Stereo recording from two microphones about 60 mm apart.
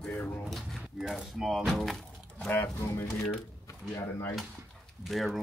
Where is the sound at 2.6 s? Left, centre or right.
Left.